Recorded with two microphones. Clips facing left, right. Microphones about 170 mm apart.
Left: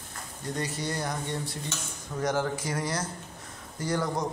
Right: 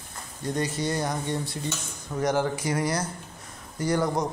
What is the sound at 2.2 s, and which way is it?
Speech, 15° right (ahead or behind).